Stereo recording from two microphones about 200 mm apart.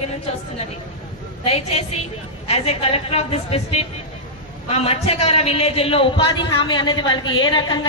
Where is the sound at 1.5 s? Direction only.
30° left (ahead or behind).